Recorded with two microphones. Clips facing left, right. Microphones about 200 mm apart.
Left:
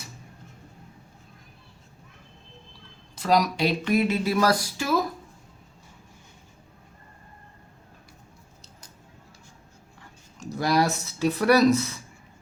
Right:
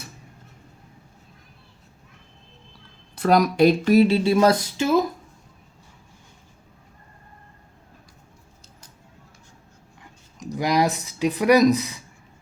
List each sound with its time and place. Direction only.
3.2 s speech: 55° right (ahead or behind)
3.9 s a sound: 30° right (ahead or behind)
10.0 s speech: 15° right (ahead or behind)